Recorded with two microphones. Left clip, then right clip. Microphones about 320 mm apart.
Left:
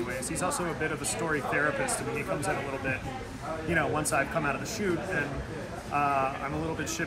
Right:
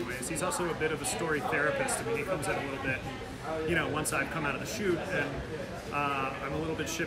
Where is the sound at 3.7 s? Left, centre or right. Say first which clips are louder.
Left 5 dB; centre.